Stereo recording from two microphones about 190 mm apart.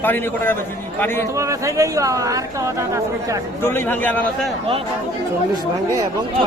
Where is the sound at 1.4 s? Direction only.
15° right (ahead or behind).